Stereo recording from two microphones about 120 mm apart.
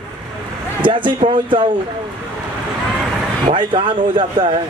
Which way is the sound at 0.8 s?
45° right (ahead or behind).